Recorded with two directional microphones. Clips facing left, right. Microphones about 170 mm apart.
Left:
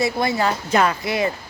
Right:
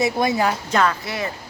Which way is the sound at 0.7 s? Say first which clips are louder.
Left 2 dB; 15° left (ahead or behind).